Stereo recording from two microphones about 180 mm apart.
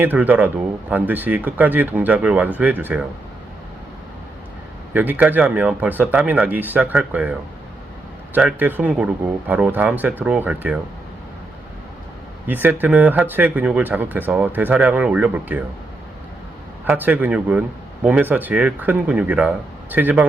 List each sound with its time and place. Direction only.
0.0 s a man's voice: 10° right (ahead or behind)
4.9 s a man's voice: 10° right (ahead or behind)
12.5 s a man's voice: 10° right (ahead or behind)
16.8 s a man's voice: 10° right (ahead or behind)